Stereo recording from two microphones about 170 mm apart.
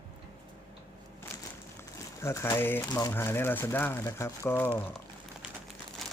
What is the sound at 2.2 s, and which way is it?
Speech, 15° left (ahead or behind).